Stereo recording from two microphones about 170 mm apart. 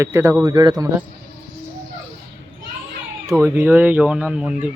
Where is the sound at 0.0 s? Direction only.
15° right (ahead or behind).